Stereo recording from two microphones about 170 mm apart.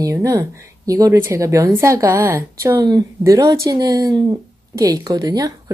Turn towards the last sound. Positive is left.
turn(degrees=-20)  # may be behind; listen again after turning